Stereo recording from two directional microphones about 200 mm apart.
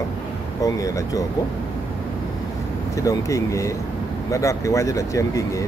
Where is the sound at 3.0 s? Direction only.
15° left (ahead or behind).